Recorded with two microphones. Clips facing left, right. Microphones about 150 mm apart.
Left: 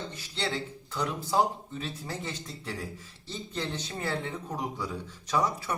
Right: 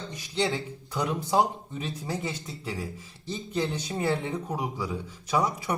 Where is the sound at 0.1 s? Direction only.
15° right (ahead or behind).